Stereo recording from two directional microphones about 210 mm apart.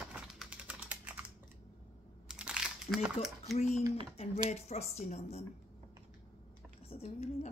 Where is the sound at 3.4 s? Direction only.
30° left (ahead or behind).